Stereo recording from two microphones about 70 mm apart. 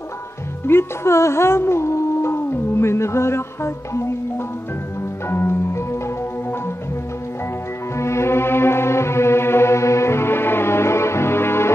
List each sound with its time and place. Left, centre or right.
0.7 s music: left
5.3 s music: left
8.0 s music: left